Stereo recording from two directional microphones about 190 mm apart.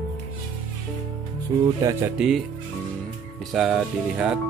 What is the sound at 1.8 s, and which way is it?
Speech, 20° right (ahead or behind).